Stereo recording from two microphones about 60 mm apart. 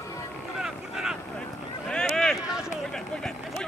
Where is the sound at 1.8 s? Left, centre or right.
Centre.